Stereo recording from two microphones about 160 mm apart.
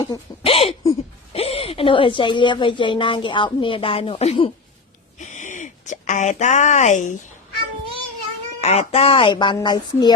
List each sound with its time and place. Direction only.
0.4 s a woman's voice: 35° left (ahead or behind)
5.1 s speech: 50° left (ahead or behind)
8.6 s a woman's voice: 40° left (ahead or behind)